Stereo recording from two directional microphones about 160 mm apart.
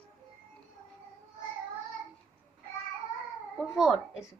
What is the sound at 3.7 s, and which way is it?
Speech, 5° right (ahead or behind).